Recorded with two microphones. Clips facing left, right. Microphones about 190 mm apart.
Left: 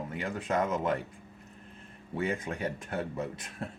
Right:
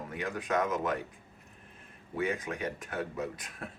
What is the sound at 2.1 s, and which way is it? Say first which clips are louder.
Speech: even; 25° left (ahead or behind).